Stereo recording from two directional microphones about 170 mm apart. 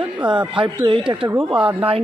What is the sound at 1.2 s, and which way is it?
Speech, 10° right (ahead or behind).